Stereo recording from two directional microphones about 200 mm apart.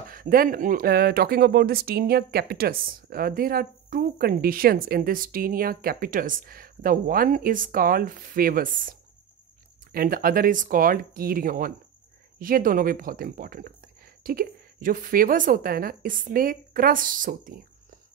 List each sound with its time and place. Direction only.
0.1 s speech: 45° right (ahead or behind)
9.9 s speech: 45° right (ahead or behind)